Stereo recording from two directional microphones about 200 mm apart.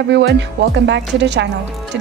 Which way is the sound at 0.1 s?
60° right (ahead or behind).